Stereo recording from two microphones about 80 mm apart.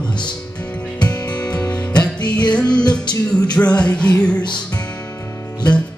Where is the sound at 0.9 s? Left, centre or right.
Centre.